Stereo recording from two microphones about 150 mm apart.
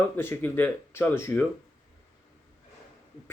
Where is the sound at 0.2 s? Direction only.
15° left (ahead or behind).